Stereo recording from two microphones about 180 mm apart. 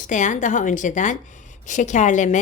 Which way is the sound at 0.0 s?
45° left (ahead or behind).